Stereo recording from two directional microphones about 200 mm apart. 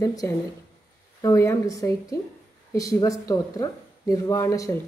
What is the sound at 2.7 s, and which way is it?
Speech, 15° left (ahead or behind).